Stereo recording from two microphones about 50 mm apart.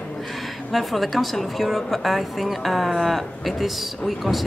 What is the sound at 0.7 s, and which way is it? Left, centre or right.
A woman's voice, centre.